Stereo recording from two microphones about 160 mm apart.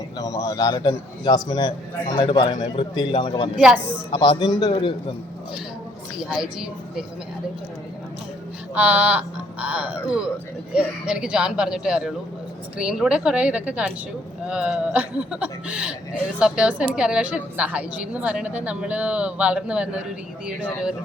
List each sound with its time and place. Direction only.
0.2 s a man's voice: 20° left (ahead or behind)
6.1 s speech: 5° right (ahead or behind)
8.7 s a woman's voice: 10° right (ahead or behind)